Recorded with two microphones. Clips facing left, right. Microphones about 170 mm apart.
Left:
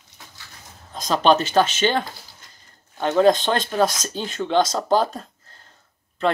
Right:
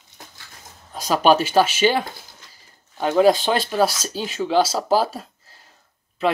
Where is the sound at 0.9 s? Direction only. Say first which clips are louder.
Right 1 dB; 10° right (ahead or behind).